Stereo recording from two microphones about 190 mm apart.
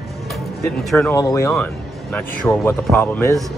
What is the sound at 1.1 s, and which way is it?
Speech, 15° left (ahead or behind).